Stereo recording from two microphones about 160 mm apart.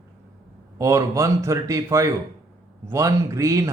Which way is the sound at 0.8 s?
20° right (ahead or behind).